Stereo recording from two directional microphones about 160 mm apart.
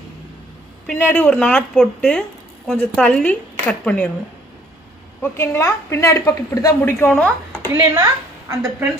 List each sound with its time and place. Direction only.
0.8 s speech: 10° left (ahead or behind)
5.2 s speech: 15° left (ahead or behind)
7.6 s a woman's voice: 20° right (ahead or behind)